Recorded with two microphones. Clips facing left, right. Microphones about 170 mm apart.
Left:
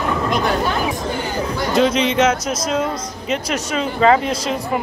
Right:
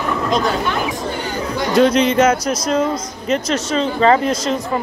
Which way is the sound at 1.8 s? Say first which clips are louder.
Right 3 dB; 5° left (ahead or behind).